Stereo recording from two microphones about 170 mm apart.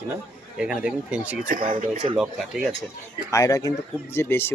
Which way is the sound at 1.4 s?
50° right (ahead or behind).